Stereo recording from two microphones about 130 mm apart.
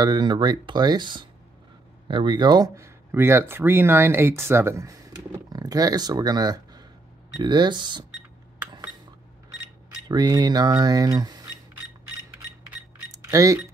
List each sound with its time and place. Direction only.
0.0 s speech: 35° right (ahead or behind)
10.0 s speech: 30° right (ahead or behind)
13.1 s a sound: 25° right (ahead or behind)